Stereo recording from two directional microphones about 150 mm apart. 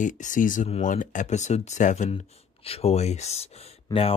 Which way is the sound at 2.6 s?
40° left (ahead or behind).